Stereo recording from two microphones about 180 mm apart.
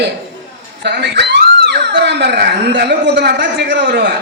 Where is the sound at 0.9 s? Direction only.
70° right (ahead or behind).